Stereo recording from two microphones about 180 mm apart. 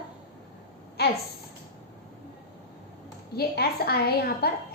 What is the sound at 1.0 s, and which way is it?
Speech, 60° left (ahead or behind).